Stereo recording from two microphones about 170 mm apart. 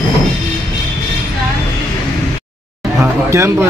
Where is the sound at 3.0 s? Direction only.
15° right (ahead or behind).